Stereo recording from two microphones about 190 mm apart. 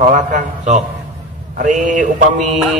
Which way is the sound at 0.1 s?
40° right (ahead or behind).